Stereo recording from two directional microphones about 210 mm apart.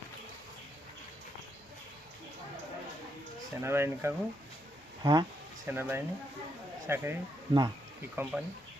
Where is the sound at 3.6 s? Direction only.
10° right (ahead or behind).